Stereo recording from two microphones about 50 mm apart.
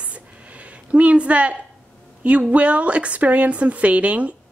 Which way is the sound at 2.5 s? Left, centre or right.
Right.